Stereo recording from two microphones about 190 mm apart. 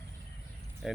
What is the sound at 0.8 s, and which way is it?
Speech, 5° right (ahead or behind).